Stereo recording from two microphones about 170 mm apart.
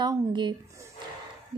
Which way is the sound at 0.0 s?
25° right (ahead or behind).